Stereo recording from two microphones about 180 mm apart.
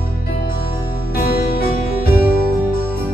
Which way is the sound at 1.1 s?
55° left (ahead or behind).